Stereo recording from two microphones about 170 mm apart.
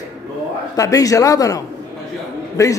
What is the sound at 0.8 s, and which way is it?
A man's voice, 20° left (ahead or behind).